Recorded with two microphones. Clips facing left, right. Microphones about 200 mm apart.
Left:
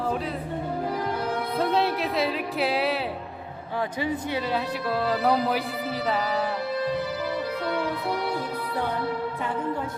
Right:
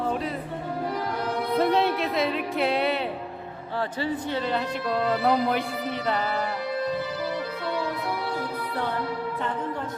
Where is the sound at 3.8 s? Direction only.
15° left (ahead or behind).